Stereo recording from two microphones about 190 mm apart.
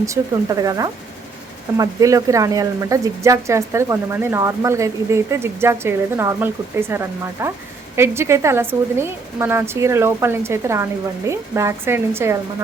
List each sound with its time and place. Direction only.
0.0 s speech: 15° right (ahead or behind)